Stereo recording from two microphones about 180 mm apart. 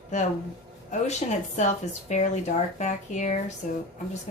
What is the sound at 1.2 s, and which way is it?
A woman's voice, 35° left (ahead or behind).